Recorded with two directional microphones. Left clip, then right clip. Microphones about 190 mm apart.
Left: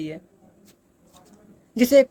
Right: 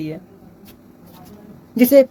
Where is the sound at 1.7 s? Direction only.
30° left (ahead or behind).